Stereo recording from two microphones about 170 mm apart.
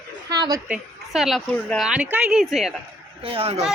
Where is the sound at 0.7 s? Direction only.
Centre (ahead or behind).